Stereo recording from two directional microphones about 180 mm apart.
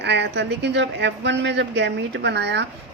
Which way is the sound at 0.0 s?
70° right (ahead or behind).